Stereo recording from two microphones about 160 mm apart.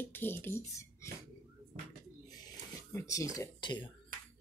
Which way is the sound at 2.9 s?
20° left (ahead or behind).